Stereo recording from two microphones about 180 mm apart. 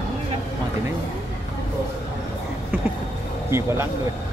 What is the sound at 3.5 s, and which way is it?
Speech, 15° right (ahead or behind).